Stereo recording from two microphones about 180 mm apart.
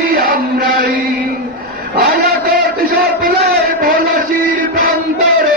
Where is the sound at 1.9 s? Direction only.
55° right (ahead or behind).